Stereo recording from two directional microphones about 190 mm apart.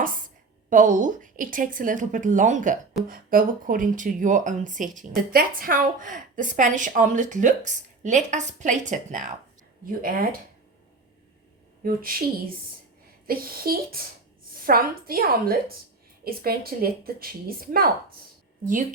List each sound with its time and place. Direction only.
0.0 s a sound: 45° right (ahead or behind)
0.7 s speech: 45° right (ahead or behind)
11.8 s speech: 50° right (ahead or behind)
13.2 s speech: 50° right (ahead or behind)